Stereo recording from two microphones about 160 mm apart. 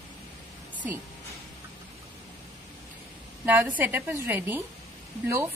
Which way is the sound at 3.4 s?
10° right (ahead or behind).